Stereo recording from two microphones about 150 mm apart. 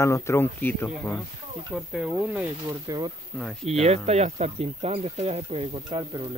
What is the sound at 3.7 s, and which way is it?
Speech, 45° right (ahead or behind).